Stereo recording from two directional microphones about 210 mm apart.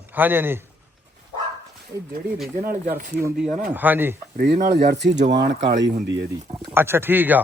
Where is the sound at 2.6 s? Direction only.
40° right (ahead or behind).